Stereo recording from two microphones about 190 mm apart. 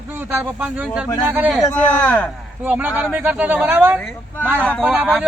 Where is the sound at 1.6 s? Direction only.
10° left (ahead or behind).